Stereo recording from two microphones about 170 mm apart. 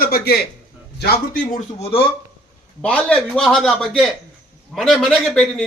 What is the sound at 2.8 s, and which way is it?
A man's voice, 5° left (ahead or behind).